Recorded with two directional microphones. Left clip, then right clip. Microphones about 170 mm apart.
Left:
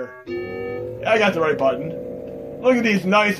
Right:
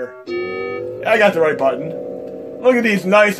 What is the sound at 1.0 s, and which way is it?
A man's voice, 30° right (ahead or behind).